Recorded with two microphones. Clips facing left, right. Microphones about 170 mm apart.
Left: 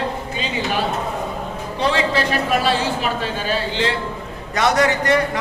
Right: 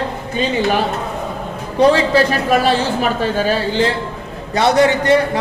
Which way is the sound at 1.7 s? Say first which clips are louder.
Right 8 dB; 40° right (ahead or behind).